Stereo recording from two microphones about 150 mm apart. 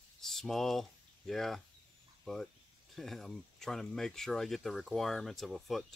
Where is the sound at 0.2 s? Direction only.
Centre (ahead or behind).